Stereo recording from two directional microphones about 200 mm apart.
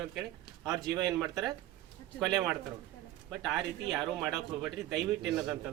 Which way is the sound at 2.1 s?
Centre (ahead or behind).